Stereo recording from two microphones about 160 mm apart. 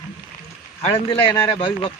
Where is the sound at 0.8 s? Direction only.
35° left (ahead or behind).